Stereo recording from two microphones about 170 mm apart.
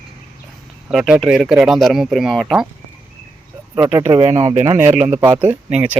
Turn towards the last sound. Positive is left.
turn(degrees=-10)  # may be behind; listen again after turning